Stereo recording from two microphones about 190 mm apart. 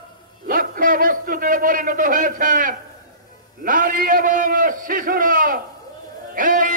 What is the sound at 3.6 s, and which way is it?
A man's voice, 45° right (ahead or behind).